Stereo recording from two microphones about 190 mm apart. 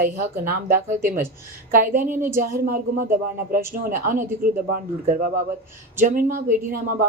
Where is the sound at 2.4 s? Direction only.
45° right (ahead or behind).